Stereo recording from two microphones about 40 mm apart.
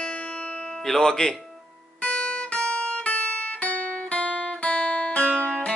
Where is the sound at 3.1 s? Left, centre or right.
Left.